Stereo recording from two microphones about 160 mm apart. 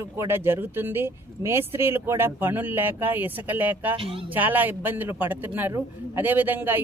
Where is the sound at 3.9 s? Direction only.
35° right (ahead or behind).